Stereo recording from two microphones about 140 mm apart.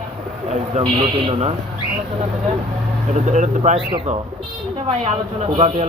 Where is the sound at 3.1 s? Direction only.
60° right (ahead or behind).